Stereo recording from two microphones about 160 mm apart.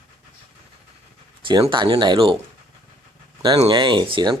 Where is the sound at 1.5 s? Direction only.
30° right (ahead or behind).